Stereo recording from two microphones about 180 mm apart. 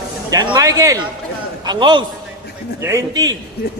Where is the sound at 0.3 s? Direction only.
20° right (ahead or behind).